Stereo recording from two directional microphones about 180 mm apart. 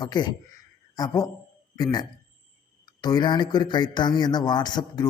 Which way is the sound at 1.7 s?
20° left (ahead or behind).